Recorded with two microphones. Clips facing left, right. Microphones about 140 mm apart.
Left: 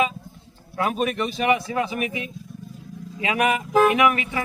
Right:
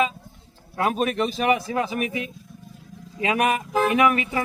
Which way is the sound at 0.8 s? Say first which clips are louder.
Right 1 dB; 40° right (ahead or behind).